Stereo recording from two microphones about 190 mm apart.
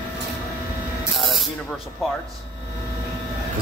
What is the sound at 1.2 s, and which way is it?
Spray, centre (ahead or behind).